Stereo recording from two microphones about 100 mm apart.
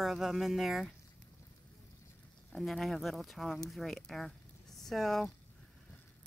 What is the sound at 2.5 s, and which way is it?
Speech, centre (ahead or behind).